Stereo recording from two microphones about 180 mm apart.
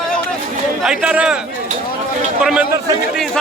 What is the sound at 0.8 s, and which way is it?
Speech, 5° right (ahead or behind).